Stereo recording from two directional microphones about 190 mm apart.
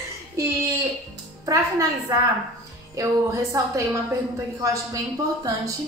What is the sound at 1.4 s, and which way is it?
A woman's voice, 15° right (ahead or behind).